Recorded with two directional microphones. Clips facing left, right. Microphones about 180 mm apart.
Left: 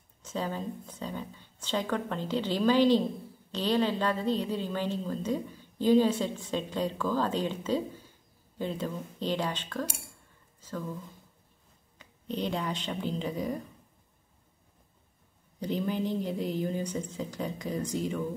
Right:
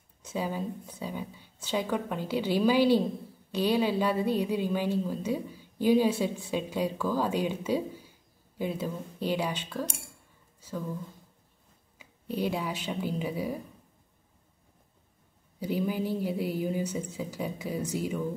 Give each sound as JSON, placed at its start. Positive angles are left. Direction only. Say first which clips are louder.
{"t": 0.2, "sound": "a woman's voice", "louder": "right 1 dB", "side_deg": -10}
{"t": 10.6, "sound": "a sound", "louder": "right 1 dB", "side_deg": -10}
{"t": 12.0, "sound": "speech", "louder": "right 2 dB", "side_deg": -10}
{"t": 15.6, "sound": "a woman's voice", "louder": "right 1 dB", "side_deg": -10}